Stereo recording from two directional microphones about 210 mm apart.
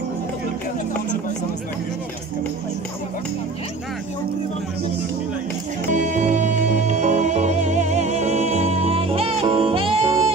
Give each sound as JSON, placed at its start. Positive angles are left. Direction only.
{"t": 5.9, "sound": "music", "side_deg": -35}